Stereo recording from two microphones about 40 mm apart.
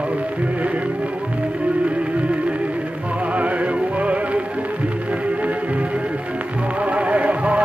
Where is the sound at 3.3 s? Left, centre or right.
Right.